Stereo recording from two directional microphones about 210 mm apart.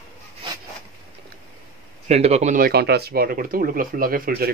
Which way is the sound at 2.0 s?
30° right (ahead or behind).